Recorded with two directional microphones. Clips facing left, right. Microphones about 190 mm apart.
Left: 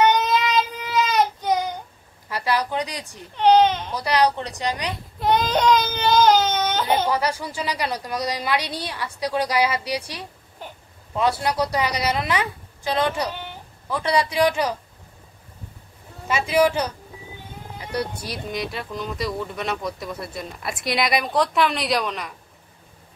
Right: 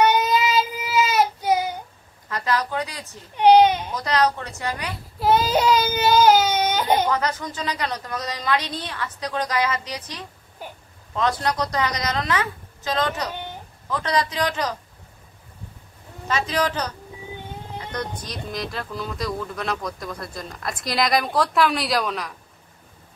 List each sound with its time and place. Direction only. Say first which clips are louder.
0.0 s child singing: even; 5° right (ahead or behind)
2.2 s a woman's voice: left 1 dB; 10° left (ahead or behind)
3.3 s baby cry: right 2 dB; 10° right (ahead or behind)
3.9 s a woman's voice: left 1 dB; 10° left (ahead or behind)
5.2 s baby cry: right 1 dB; 5° right (ahead or behind)
7.1 s a woman's voice: left 1 dB; 10° left (ahead or behind)
16.3 s a woman's voice: left 4 dB; 10° left (ahead or behind)
17.9 s speech: left 4 dB; 10° left (ahead or behind)